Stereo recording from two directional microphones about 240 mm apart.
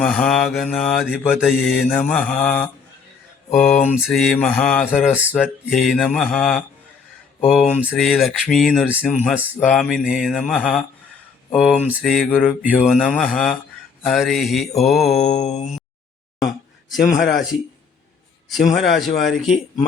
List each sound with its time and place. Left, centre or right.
0.0 s speech: centre
15.2 s mantra: left
18.4 s speech: centre